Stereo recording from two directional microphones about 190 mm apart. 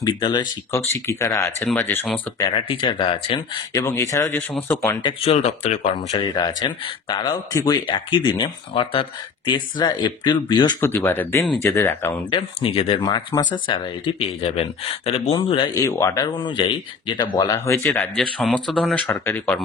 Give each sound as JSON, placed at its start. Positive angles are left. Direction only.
{"t": 0.0, "sound": "speech", "side_deg": 20}
{"t": 3.7, "sound": "speech", "side_deg": 15}
{"t": 5.0, "sound": "speech", "side_deg": 30}
{"t": 6.0, "sound": "speech", "side_deg": 25}
{"t": 10.8, "sound": "speech", "side_deg": 10}
{"t": 12.3, "sound": "speech", "side_deg": 30}
{"t": 16.3, "sound": "speech", "side_deg": 25}